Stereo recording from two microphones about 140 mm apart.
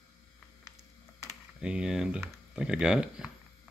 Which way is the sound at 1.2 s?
5° right (ahead or behind).